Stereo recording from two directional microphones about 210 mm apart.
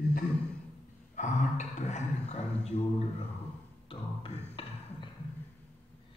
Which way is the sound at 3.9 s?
25° left (ahead or behind).